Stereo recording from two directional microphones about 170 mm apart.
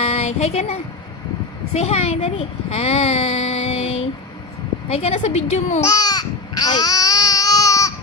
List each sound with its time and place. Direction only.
0.0 s a child's voice: 40° left (ahead or behind)
5.8 s baby cry: 20° left (ahead or behind)